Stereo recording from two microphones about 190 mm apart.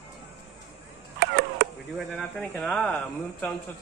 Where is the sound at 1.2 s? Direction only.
65° right (ahead or behind).